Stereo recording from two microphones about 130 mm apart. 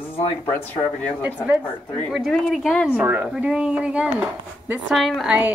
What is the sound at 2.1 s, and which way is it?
Speech, 5° left (ahead or behind).